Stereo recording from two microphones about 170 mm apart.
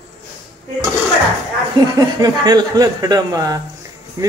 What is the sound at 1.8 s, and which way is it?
Speech, 25° right (ahead or behind).